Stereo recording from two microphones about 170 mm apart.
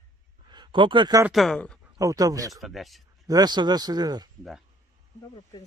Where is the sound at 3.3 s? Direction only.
25° right (ahead or behind).